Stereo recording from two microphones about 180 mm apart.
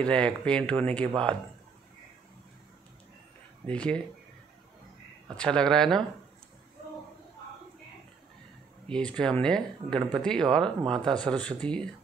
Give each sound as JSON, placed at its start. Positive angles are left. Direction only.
{"t": 0.0, "sound": "speech", "side_deg": 5}
{"t": 3.6, "sound": "speech", "side_deg": 5}
{"t": 5.4, "sound": "speech", "side_deg": 5}
{"t": 8.8, "sound": "speech", "side_deg": 5}